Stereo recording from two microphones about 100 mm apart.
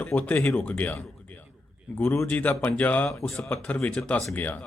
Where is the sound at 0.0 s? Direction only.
15° left (ahead or behind).